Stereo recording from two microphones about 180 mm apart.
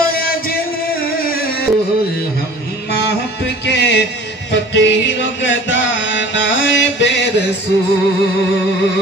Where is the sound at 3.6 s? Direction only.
70° left (ahead or behind).